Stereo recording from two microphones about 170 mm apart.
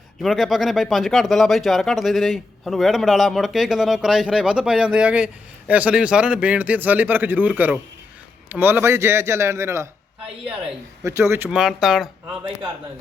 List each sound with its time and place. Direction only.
0.2 s a man's voice: centre (ahead or behind); by 9.9 s 15° right (ahead or behind)
11.0 s a man's voice: 15° right (ahead or behind)
11.4 s speech: 5° right (ahead or behind)